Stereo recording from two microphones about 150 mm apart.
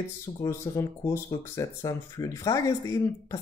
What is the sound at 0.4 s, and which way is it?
Speech, 20° left (ahead or behind).